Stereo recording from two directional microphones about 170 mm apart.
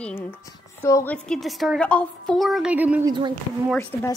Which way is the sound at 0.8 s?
20° left (ahead or behind).